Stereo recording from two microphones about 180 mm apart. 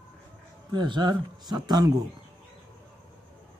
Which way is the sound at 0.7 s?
25° right (ahead or behind).